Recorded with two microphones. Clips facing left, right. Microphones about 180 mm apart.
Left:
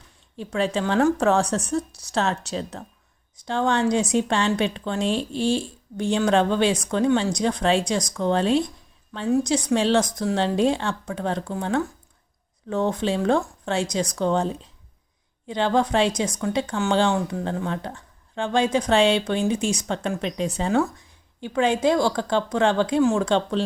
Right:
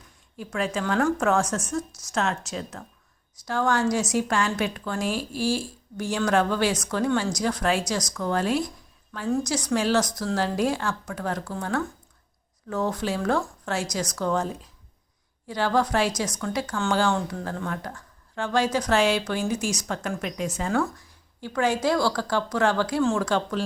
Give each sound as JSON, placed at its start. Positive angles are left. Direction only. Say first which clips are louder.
{"t": 0.3, "sound": "a woman's voice", "louder": "left 4 dB", "side_deg": 30}